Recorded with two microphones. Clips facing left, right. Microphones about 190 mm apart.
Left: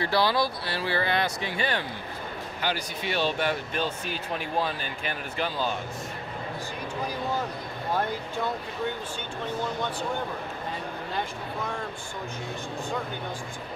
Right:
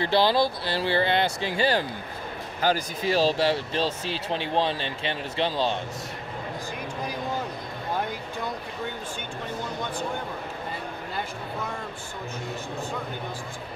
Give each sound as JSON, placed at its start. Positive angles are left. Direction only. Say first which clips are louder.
{"t": 0.0, "sound": "speech", "louder": "right 3 dB", "side_deg": -25}